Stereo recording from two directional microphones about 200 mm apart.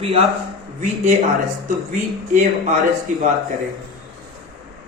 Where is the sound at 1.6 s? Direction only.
40° right (ahead or behind).